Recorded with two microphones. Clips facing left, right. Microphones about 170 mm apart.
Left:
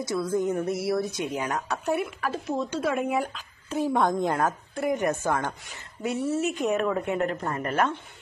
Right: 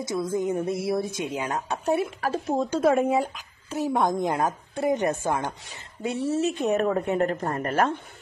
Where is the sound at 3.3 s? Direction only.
10° right (ahead or behind); by 7.9 s 40° right (ahead or behind).